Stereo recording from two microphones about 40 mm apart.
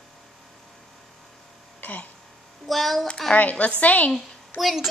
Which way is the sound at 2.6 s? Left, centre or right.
Centre.